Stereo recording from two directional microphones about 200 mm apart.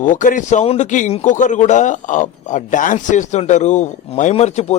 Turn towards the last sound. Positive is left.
turn(degrees=35)  # may be behind; listen again after turning